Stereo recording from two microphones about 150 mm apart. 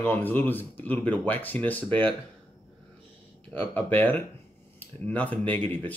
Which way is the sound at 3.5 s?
10° left (ahead or behind).